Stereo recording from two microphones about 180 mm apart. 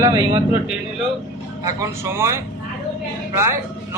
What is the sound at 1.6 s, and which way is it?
Speech, 15° right (ahead or behind).